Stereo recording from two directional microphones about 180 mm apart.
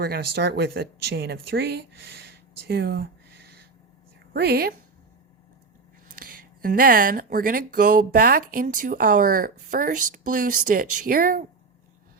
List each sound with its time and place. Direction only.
0.0 s speech: 60° right (ahead or behind)
4.4 s speech: 60° right (ahead or behind)
6.1 s speech: 50° right (ahead or behind)